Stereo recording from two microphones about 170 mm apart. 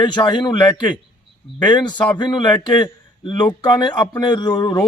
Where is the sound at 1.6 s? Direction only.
25° left (ahead or behind).